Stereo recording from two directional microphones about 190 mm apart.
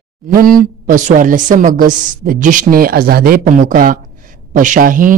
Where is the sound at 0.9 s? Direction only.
45° right (ahead or behind).